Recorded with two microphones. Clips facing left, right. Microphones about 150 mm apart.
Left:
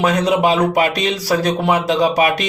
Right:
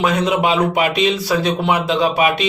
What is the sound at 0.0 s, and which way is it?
Speech, 40° left (ahead or behind).